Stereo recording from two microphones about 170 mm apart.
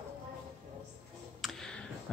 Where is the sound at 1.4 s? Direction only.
5° left (ahead or behind).